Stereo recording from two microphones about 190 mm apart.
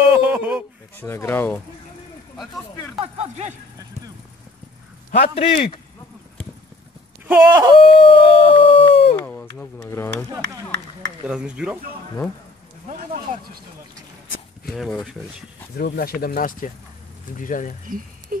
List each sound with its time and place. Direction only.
0.1 s a sound: 10° right (ahead or behind)
1.0 s speech: 10° left (ahead or behind)
3.0 s speech: 35° right (ahead or behind)
5.1 s a man's voice: 35° left (ahead or behind)
7.4 s speech: 20° right (ahead or behind)
7.7 s howl: 25° left (ahead or behind)
9.1 s speech: 10° left (ahead or behind)
11.2 s speech: 5° right (ahead or behind)
14.7 s speech: centre (ahead or behind)
15.7 s speech: 55° left (ahead or behind)
17.8 s speech: 45° right (ahead or behind)